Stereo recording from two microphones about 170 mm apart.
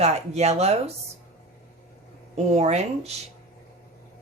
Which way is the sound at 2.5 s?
40° right (ahead or behind).